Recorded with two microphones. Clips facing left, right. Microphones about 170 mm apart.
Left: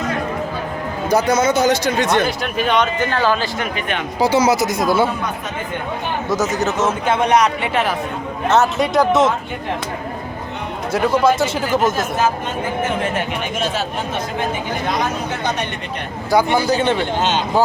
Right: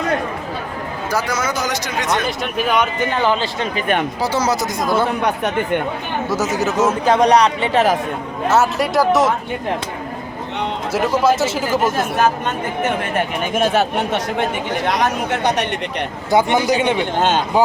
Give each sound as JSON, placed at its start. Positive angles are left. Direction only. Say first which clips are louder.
{"t": 1.1, "sound": "a man's voice", "louder": "left 6 dB", "side_deg": 20}
{"t": 2.2, "sound": "speech", "louder": "left 1 dB", "side_deg": 0}
{"t": 4.2, "sound": "speech", "louder": "left 4 dB", "side_deg": 10}
{"t": 5.2, "sound": "speech", "louder": "right 6 dB", "side_deg": -70}
{"t": 6.3, "sound": "speech", "louder": "even", "side_deg": -10}
{"t": 7.0, "sound": "speech", "louder": "right 3 dB", "side_deg": -35}
{"t": 8.4, "sound": "speech", "louder": "left 1 dB", "side_deg": -5}
{"t": 10.9, "sound": "speech", "louder": "left 1 dB", "side_deg": -5}
{"t": 13.5, "sound": "speech", "louder": "right 5 dB", "side_deg": -55}
{"t": 16.3, "sound": "speech", "louder": "even", "side_deg": -20}
{"t": 17.2, "sound": "speech", "louder": "right 2 dB", "side_deg": -50}